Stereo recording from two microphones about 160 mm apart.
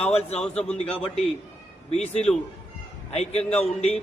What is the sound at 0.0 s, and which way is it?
Speech, 40° left (ahead or behind).